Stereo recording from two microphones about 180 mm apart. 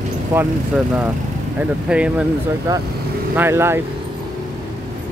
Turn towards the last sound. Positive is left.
turn(degrees=-15)  # may be behind; listen again after turning